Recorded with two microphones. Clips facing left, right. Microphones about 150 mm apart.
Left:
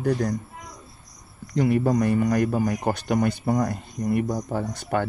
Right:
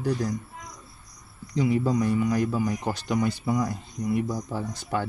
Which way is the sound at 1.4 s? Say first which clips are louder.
Left 3 dB; 60° left (ahead or behind).